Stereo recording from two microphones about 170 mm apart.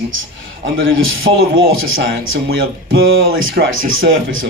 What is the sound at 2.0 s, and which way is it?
Speech, 65° right (ahead or behind).